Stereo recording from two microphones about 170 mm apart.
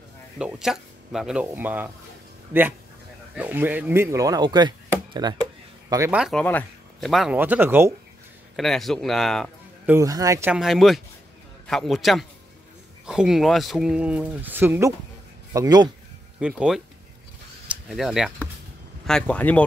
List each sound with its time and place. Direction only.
0.4 s speech: 5° right (ahead or behind)
3.3 s speech: 10° right (ahead or behind)
6.1 s speech: centre (ahead or behind)
7.3 s speech: 10° right (ahead or behind)
8.5 s speech: centre (ahead or behind)
9.8 s speech: 20° right (ahead or behind)
10.5 s speech: centre (ahead or behind); by 15.9 s 20° right (ahead or behind)
16.3 s speech: 5° right (ahead or behind)